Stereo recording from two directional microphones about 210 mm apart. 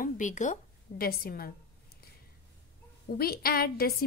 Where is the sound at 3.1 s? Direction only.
45° left (ahead or behind).